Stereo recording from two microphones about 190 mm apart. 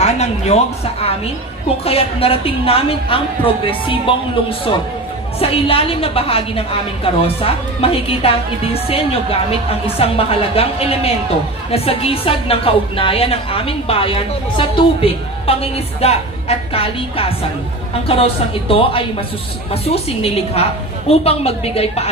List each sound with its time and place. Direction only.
0.0 s a man's voice: 35° left (ahead or behind)
1.9 s a woman's voice: 30° left (ahead or behind)